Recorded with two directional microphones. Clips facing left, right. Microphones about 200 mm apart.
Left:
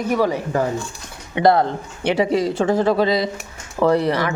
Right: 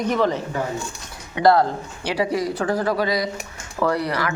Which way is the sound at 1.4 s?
20° left (ahead or behind).